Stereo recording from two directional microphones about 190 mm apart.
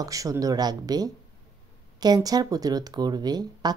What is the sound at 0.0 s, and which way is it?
Speech, 15° right (ahead or behind).